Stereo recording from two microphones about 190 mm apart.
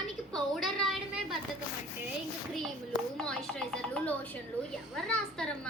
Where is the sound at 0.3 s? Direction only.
Centre (ahead or behind).